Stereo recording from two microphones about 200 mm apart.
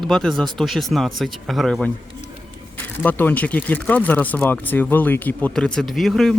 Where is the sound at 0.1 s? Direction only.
Centre (ahead or behind).